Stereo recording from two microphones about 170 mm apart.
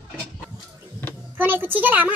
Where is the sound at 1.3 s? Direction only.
10° right (ahead or behind).